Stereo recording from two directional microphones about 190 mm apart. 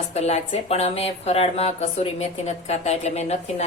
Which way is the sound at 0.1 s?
35° left (ahead or behind).